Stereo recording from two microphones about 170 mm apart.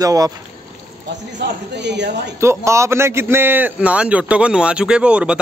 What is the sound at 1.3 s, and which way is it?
A man's voice, 90° right.